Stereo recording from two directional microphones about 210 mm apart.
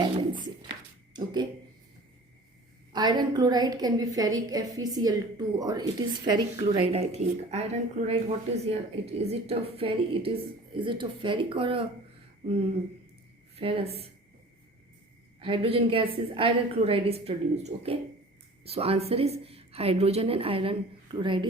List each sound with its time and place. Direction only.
0.0 s a sound: 20° right (ahead or behind)
2.9 s a woman's voice: 20° right (ahead or behind)
13.6 s a woman's voice: 25° right (ahead or behind)
15.4 s a woman's voice: 25° right (ahead or behind)